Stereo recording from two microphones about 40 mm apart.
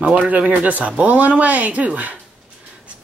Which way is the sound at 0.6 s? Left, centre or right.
Right.